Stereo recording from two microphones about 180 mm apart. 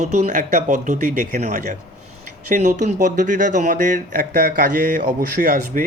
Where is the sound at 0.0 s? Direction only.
40° right (ahead or behind).